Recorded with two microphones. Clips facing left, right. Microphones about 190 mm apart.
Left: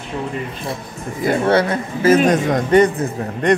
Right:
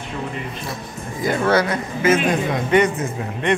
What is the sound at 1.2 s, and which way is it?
A man's voice, 30° left (ahead or behind).